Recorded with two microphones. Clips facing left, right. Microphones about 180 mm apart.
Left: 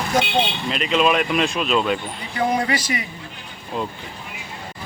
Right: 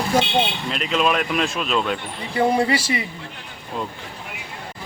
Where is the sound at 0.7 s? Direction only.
Centre (ahead or behind).